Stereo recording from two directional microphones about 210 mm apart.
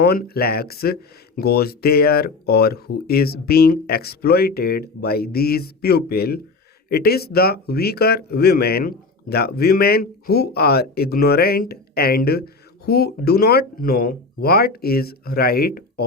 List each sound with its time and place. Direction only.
0.0 s speech: 50° left (ahead or behind)